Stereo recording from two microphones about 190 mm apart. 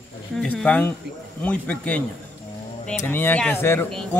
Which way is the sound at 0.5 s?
5° left (ahead or behind).